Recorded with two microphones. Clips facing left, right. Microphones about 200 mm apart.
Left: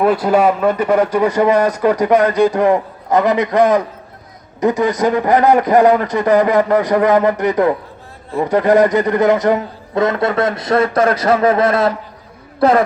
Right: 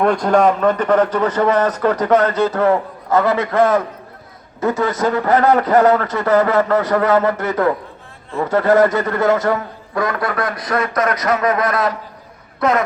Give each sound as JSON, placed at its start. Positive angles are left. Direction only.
{"t": 0.0, "sound": "a man's voice", "side_deg": 5}